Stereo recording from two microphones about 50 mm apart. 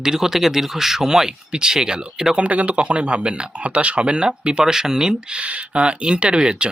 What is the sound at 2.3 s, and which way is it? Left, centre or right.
Speech, right.